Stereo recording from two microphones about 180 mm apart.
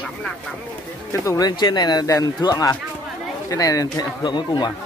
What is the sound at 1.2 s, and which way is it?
Speech, 20° left (ahead or behind).